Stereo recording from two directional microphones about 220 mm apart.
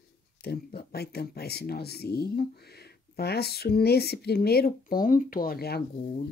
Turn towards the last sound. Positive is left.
turn(degrees=45)  # may be behind; listen again after turning